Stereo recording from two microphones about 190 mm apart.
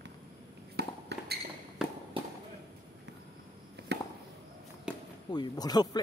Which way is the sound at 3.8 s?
60° right (ahead or behind).